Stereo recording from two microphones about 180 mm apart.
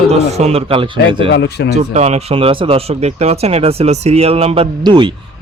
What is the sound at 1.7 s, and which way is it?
Speech, 40° right (ahead or behind).